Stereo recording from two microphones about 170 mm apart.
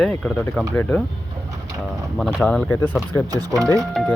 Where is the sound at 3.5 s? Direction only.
20° right (ahead or behind).